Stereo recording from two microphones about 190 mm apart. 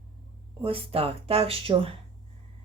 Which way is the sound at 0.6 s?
30° right (ahead or behind).